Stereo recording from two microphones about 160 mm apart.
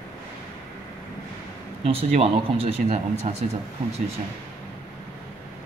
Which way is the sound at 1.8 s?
40° right (ahead or behind).